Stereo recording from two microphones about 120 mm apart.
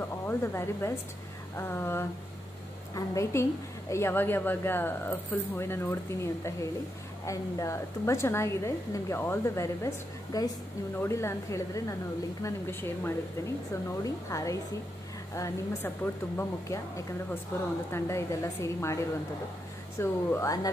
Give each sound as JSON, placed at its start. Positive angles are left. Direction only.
{"t": 0.3, "sound": "a woman's voice", "side_deg": 20}
{"t": 20.0, "sound": "a woman's voice", "side_deg": 20}